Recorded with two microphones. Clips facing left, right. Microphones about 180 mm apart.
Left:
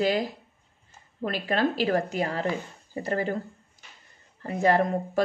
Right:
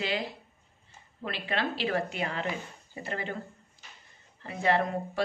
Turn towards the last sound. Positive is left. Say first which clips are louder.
# left 5 dB
turn(degrees=45)  # may be behind; listen again after turning